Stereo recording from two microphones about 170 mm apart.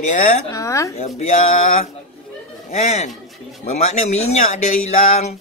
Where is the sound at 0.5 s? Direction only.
20° left (ahead or behind).